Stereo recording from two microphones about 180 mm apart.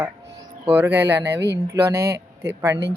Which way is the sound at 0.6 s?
10° right (ahead or behind).